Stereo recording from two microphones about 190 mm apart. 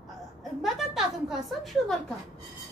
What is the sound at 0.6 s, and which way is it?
A man's voice, centre (ahead or behind).